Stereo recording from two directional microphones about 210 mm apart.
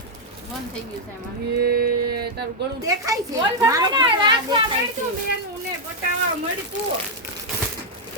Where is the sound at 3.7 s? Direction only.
20° right (ahead or behind).